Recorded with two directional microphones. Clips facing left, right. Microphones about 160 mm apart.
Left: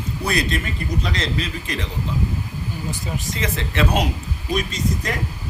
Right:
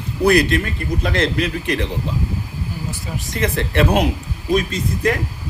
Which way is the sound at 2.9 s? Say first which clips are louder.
Left 1 dB; centre (ahead or behind).